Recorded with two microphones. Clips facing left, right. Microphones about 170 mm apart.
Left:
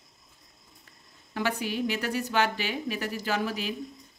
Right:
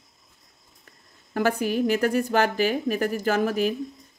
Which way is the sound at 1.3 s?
45° right (ahead or behind).